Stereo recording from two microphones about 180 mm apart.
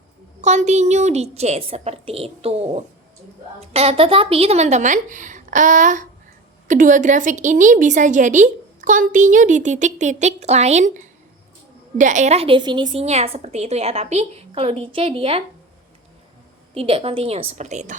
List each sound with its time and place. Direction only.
0.4 s a woman's voice: 40° right (ahead or behind)
16.7 s a woman's voice: 30° right (ahead or behind)